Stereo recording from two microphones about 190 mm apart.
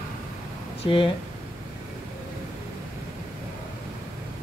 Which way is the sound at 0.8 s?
25° left (ahead or behind).